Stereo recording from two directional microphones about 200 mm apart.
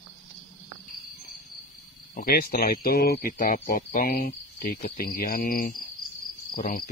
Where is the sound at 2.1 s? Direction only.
50° left (ahead or behind).